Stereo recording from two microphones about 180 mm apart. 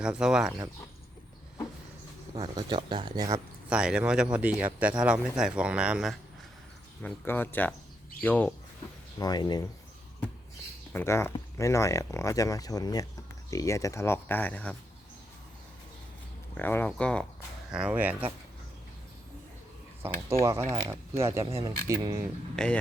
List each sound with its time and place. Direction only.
0.0 s speech: 5° right (ahead or behind)
2.3 s speech: 25° right (ahead or behind)
3.7 s speech: 5° right (ahead or behind)
7.0 s speech: 10° left (ahead or behind)
9.1 s speech: 20° left (ahead or behind)
10.9 s speech: 15° left (ahead or behind)
16.6 s speech: 10° left (ahead or behind)
17.7 s speech: 5° right (ahead or behind)
20.4 s speech: 15° right (ahead or behind)
22.5 s speech: 5° left (ahead or behind)